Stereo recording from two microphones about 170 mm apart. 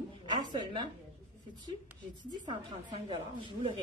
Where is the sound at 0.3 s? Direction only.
25° right (ahead or behind).